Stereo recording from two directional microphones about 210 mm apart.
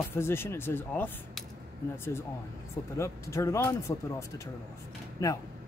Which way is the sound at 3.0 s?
15° left (ahead or behind).